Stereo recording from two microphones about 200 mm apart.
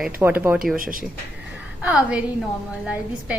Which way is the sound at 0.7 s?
45° right (ahead or behind).